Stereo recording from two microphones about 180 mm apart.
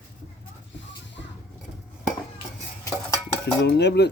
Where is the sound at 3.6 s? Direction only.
75° left (ahead or behind).